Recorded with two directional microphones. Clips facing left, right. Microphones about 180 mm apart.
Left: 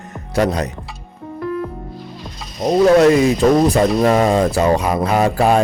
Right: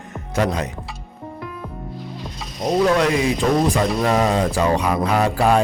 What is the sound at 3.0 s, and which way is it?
Speech, 45° left (ahead or behind).